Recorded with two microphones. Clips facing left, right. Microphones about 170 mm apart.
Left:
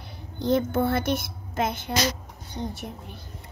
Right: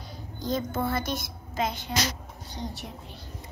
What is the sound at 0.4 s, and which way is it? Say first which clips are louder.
A woman's voice: left 6 dB; 65° left (ahead or behind).